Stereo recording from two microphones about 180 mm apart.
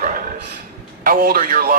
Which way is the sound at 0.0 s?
50° right (ahead or behind).